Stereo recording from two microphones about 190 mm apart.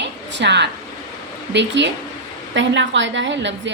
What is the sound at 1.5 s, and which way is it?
A woman's voice, 70° right (ahead or behind).